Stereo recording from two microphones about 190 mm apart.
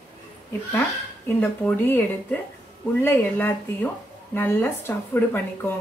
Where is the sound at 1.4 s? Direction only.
10° left (ahead or behind).